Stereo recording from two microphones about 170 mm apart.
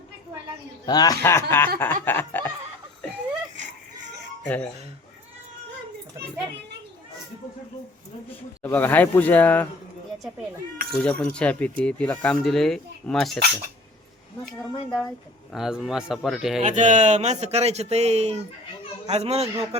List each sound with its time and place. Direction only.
0.9 s speech: 20° left (ahead or behind)
4.4 s speech: 10° left (ahead or behind)
8.6 s speech: 10° left (ahead or behind)
11.0 s speech: 5° left (ahead or behind)
14.4 s speech: 5° left (ahead or behind)
16.6 s speech: 45° right (ahead or behind)